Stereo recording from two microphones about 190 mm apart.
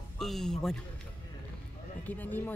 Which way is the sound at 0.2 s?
Centre (ahead or behind).